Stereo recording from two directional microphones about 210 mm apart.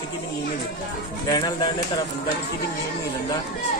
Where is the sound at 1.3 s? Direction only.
20° left (ahead or behind).